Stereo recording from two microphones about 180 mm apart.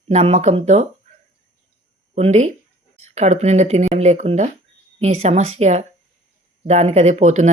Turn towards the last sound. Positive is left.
turn(degrees=-40)  # may be behind; listen again after turning